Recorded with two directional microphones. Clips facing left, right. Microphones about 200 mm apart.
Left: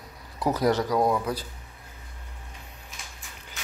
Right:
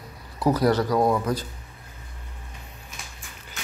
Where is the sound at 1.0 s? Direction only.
5° left (ahead or behind).